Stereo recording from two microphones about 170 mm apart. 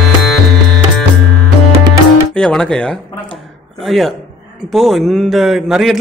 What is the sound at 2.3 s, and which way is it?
A man's voice, 5° left (ahead or behind).